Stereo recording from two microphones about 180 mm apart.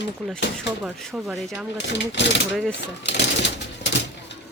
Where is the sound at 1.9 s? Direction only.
80° left.